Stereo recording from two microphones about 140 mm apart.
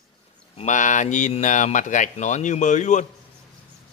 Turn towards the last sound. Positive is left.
turn(degrees=60)  # may be behind; listen again after turning